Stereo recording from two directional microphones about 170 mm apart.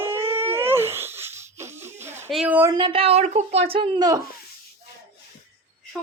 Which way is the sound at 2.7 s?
30° right (ahead or behind).